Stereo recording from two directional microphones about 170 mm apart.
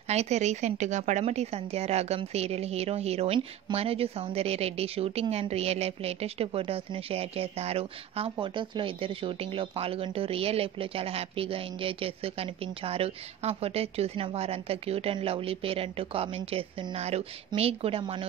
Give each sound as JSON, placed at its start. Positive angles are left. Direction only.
{"t": 0.1, "sound": "a woman's voice", "side_deg": -40}